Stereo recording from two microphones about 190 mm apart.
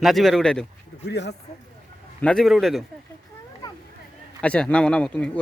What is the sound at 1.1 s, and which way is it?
Speech, 65° left (ahead or behind).